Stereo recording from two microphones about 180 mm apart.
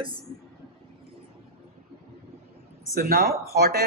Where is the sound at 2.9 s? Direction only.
55° right (ahead or behind).